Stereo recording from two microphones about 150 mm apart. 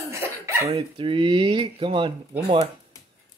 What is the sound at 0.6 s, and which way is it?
Speech, 35° right (ahead or behind).